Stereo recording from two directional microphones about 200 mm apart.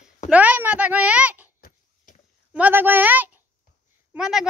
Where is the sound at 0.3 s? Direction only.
5° right (ahead or behind).